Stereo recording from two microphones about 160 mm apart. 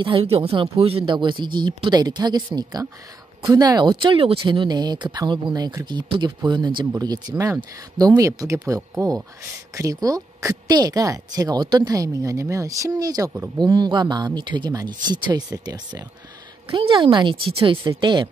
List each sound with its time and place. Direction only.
0.0 s a woman's voice: 35° right (ahead or behind)